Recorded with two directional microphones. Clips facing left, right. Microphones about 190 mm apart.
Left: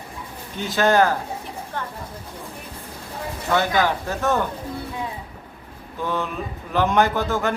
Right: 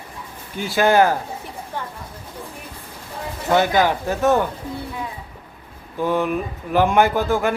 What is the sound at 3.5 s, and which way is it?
Speech, 15° right (ahead or behind).